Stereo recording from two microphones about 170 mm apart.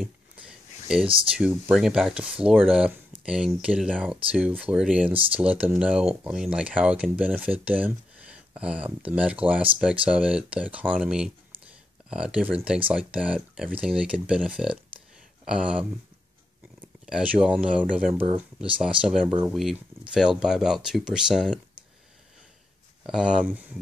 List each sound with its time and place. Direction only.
0.0 s a sound: 5° right (ahead or behind)
1.4 s speech: 5° right (ahead or behind)
5.1 s speech: 30° right (ahead or behind)
5.4 s speech: 10° right (ahead or behind)
17.0 s speech: 5° right (ahead or behind)
23.0 s speech: 5° right (ahead or behind)